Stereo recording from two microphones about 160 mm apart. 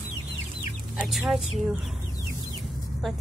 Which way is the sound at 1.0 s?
5° right (ahead or behind).